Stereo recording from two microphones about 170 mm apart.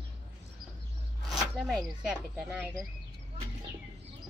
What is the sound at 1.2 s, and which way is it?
Speech, centre (ahead or behind).